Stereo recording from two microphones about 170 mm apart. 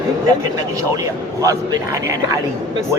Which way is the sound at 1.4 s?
20° right (ahead or behind).